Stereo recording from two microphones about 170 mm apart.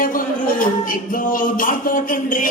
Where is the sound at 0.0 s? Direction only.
55° left (ahead or behind).